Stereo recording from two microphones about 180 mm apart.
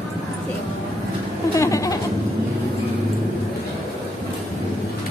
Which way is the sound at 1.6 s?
15° left (ahead or behind).